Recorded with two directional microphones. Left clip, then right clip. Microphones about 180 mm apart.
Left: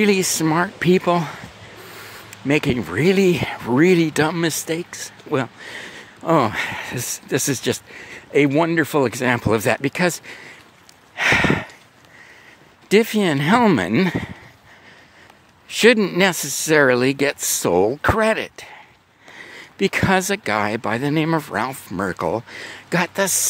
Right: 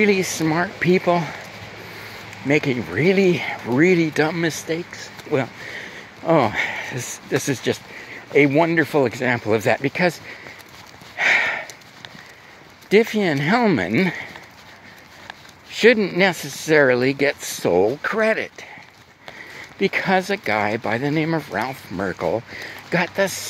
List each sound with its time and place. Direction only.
0.0 s speech: 45° left (ahead or behind)
2.4 s speech: 45° left (ahead or behind)
11.1 s sniff: 45° left (ahead or behind)
12.9 s speech: 45° left (ahead or behind)
15.7 s speech: 50° left (ahead or behind)
19.8 s speech: 50° left (ahead or behind)